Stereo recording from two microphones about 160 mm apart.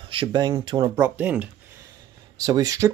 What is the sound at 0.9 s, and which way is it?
Speech, 10° right (ahead or behind).